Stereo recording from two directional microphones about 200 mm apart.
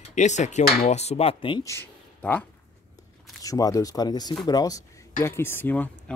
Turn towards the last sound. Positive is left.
turn(degrees=10)  # may be behind; listen again after turning